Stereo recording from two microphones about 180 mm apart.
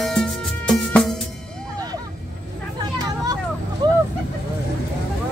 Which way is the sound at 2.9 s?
20° right (ahead or behind).